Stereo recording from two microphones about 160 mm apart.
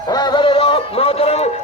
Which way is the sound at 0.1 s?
25° left (ahead or behind).